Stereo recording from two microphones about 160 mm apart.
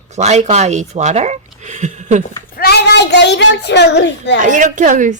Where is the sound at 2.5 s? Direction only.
90° left.